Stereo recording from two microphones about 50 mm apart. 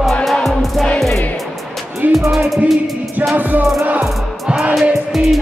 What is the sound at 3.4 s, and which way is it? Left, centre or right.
Music, right.